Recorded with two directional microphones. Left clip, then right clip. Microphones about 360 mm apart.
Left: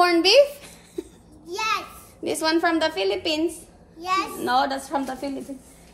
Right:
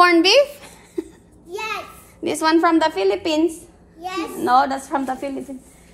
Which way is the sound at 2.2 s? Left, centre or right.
Centre.